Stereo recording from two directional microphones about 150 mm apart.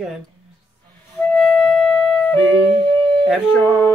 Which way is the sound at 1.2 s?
5° left (ahead or behind).